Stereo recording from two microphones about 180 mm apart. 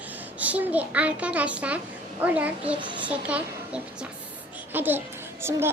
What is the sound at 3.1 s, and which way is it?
A child's voice, 5° right (ahead or behind).